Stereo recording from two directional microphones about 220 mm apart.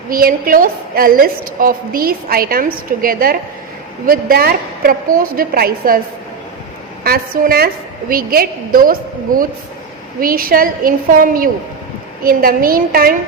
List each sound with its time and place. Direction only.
0.1 s a woman's voice: 40° right (ahead or behind)
7.0 s a woman's voice: 45° right (ahead or behind)